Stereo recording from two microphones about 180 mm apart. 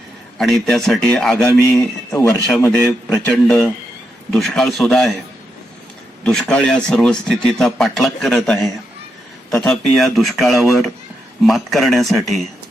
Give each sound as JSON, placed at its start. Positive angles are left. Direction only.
{"t": 0.3, "sound": "speech", "side_deg": 0}
{"t": 2.6, "sound": "a man's voice", "side_deg": 15}
{"t": 3.3, "sound": "speech", "side_deg": 5}
{"t": 6.2, "sound": "speech", "side_deg": 5}